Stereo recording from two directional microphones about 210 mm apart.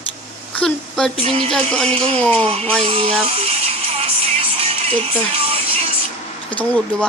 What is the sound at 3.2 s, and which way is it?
Music, 30° right (ahead or behind).